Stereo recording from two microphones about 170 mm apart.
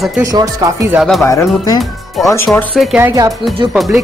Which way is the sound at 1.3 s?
20° left (ahead or behind).